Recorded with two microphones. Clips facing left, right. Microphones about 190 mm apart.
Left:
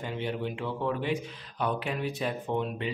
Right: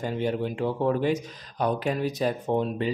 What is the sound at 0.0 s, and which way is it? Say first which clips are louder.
A man's voice: right 5 dB; 40° right (ahead or behind).